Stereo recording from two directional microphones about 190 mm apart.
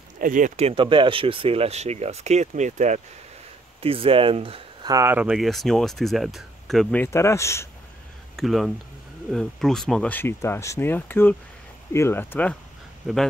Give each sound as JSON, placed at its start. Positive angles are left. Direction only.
{"t": 0.2, "sound": "speech", "side_deg": -45}
{"t": 4.9, "sound": "speech", "side_deg": -10}
{"t": 8.4, "sound": "speech", "side_deg": 0}